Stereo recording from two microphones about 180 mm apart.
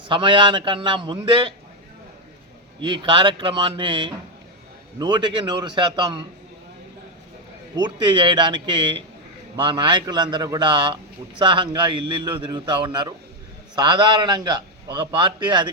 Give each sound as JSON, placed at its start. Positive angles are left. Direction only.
{"t": 0.1, "sound": "a man's voice", "side_deg": -30}
{"t": 2.8, "sound": "a man's voice", "side_deg": -25}
{"t": 7.8, "sound": "a man's voice", "side_deg": -25}